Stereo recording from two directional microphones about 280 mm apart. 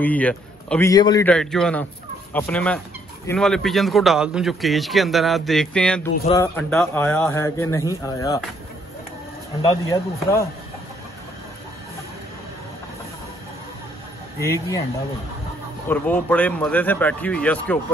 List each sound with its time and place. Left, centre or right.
0.0 s a man's voice: centre
1.3 s a man's voice: centre
9.6 s a man's voice: centre
14.4 s a man's voice: centre
15.9 s a man's voice: centre